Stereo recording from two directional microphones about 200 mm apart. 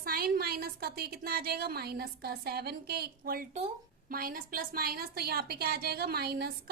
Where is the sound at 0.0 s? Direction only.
50° right (ahead or behind).